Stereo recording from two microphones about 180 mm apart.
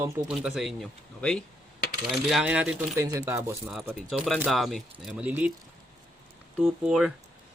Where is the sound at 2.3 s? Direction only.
5° right (ahead or behind).